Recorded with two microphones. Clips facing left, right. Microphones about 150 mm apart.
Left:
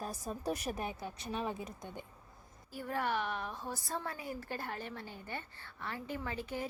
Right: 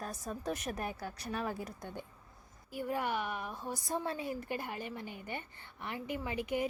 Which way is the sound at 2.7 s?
10° right (ahead or behind).